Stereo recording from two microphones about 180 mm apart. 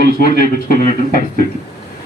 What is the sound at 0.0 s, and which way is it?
Speech, 55° left (ahead or behind).